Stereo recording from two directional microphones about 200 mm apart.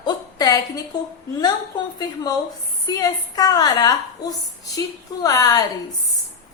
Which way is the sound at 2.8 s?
20° left (ahead or behind).